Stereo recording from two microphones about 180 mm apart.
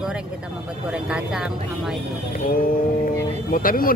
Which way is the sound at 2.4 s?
50° left (ahead or behind).